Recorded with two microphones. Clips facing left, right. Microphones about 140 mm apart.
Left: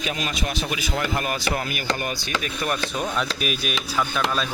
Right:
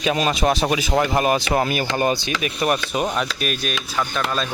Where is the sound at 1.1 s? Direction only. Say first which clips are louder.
Right 9 dB; 90° right.